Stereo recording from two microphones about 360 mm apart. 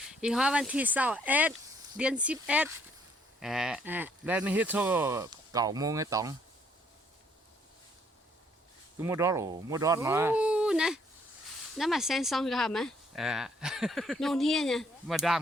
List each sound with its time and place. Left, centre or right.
0.1 s speech: centre
9.0 s speech: centre